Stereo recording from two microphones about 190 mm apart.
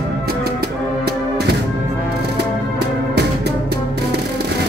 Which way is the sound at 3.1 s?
60° right (ahead or behind).